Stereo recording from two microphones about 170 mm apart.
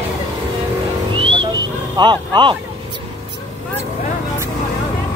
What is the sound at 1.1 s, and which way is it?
Music, 30° right (ahead or behind).